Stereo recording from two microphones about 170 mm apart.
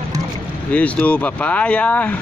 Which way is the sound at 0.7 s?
10° left (ahead or behind).